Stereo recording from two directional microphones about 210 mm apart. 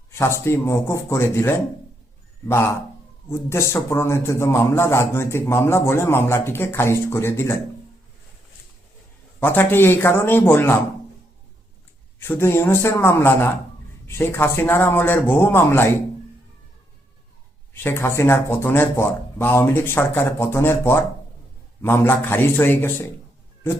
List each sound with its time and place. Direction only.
0.1 s a man's voice: 15° left (ahead or behind)
3.2 s a man's voice: 15° left (ahead or behind)
9.4 s a man's voice: 10° left (ahead or behind)
12.2 s a man's voice: 10° left (ahead or behind)
17.7 s a man's voice: 10° left (ahead or behind)